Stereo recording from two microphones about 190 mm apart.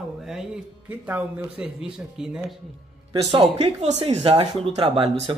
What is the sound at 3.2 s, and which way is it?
Speech, 30° right (ahead or behind).